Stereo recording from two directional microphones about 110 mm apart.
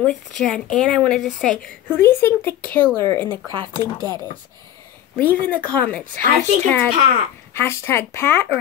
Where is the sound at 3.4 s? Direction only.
35° right (ahead or behind).